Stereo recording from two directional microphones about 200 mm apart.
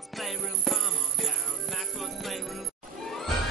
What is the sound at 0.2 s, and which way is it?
Music, centre (ahead or behind).